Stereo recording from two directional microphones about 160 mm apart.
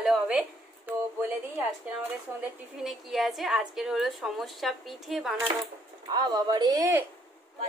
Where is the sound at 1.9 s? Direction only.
10° right (ahead or behind).